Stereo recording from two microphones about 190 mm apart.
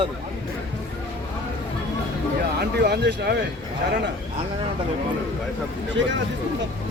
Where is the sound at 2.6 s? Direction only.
55° right (ahead or behind).